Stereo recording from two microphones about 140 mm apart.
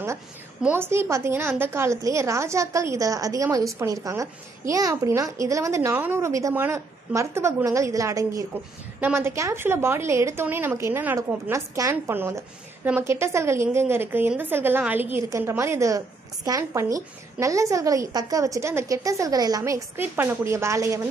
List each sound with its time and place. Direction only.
0.6 s a child's voice: 15° right (ahead or behind)